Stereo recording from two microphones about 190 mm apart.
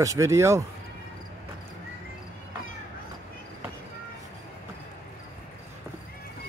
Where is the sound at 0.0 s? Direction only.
15° right (ahead or behind).